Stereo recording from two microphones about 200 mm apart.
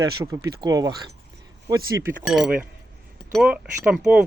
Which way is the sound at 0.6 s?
20° right (ahead or behind).